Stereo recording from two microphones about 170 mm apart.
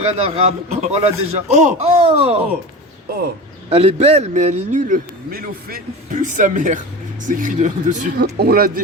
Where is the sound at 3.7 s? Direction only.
35° right (ahead or behind).